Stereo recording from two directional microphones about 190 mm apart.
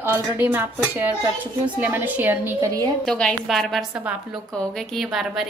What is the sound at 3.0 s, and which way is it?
A woman's voice, 5° left (ahead or behind).